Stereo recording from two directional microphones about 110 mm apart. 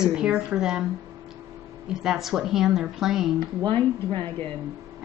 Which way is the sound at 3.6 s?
20° left (ahead or behind).